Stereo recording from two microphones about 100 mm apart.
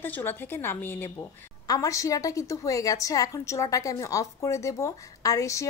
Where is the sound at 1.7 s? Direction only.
35° left (ahead or behind).